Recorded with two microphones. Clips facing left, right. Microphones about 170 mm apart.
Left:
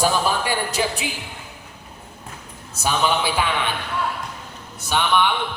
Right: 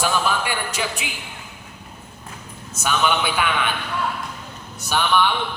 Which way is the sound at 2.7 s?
30° left (ahead or behind).